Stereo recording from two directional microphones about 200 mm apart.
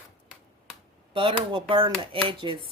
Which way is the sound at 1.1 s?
25° right (ahead or behind).